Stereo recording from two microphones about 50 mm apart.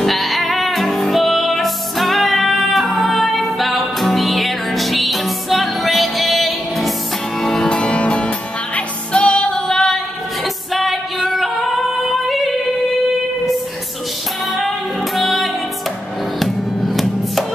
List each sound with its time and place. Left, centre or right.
0.0 s music: centre
10.4 s female singing: centre
15.1 s music: centre